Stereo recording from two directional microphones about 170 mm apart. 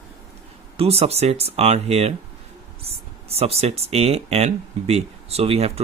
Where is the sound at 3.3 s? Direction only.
35° right (ahead or behind).